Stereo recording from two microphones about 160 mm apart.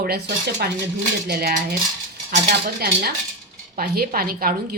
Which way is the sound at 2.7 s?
70° right (ahead or behind).